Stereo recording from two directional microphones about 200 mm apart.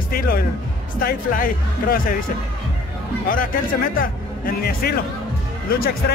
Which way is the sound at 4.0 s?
50° left (ahead or behind).